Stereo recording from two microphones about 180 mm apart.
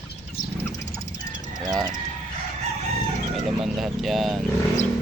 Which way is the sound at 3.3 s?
Centre (ahead or behind).